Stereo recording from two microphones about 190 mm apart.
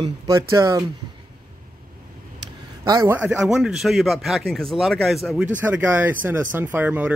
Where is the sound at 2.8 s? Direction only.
20° right (ahead or behind).